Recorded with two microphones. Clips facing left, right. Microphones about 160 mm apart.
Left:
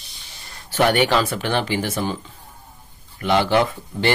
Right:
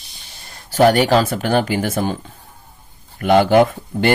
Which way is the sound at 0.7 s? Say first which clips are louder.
Right 5 dB; 40° right (ahead or behind).